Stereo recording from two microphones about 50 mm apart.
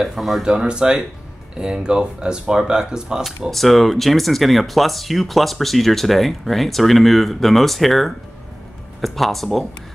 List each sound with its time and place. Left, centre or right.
0.0 s speech: centre
0.5 s speech: centre
3.4 s speech: centre